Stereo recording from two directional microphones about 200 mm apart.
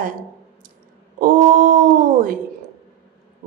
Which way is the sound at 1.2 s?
45° right (ahead or behind).